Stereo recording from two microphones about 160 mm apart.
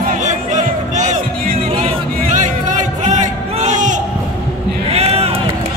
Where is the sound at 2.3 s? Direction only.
50° right (ahead or behind).